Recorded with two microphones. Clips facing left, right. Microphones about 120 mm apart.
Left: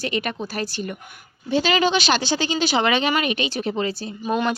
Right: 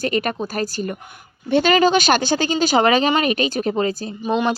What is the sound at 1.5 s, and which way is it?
Speech, 55° right (ahead or behind).